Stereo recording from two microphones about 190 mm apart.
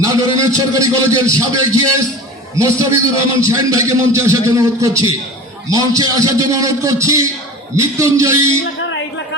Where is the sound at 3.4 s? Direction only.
15° right (ahead or behind).